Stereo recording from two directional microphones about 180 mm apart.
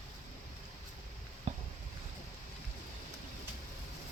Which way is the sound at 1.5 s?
40° right (ahead or behind).